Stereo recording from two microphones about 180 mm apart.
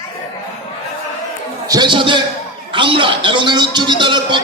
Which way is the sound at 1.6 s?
25° right (ahead or behind).